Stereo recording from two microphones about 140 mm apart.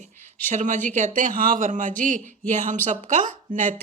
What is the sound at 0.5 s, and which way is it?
A woman's voice, 65° right (ahead or behind).